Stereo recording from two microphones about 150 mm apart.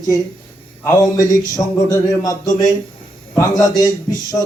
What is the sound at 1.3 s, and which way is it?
Speech, 20° left (ahead or behind).